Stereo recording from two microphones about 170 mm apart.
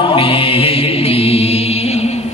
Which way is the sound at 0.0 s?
30° left (ahead or behind).